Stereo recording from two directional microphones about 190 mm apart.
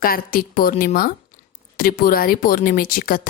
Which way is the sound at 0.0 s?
50° left (ahead or behind).